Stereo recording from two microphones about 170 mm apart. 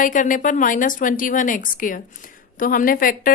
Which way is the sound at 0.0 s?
50° left (ahead or behind).